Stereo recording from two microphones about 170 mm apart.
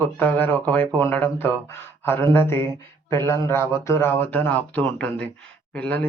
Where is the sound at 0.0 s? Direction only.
10° left (ahead or behind).